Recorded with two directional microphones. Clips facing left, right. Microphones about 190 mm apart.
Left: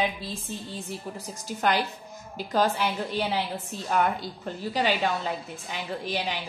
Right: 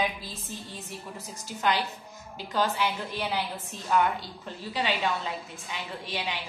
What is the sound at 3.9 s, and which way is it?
A woman's voice, 45° left (ahead or behind).